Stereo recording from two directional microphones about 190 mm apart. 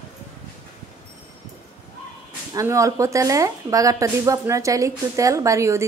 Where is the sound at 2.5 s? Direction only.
15° right (ahead or behind).